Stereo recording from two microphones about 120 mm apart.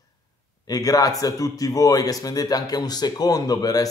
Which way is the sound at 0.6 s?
30° left (ahead or behind).